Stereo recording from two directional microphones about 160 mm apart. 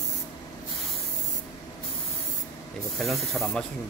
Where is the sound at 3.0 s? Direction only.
Centre (ahead or behind).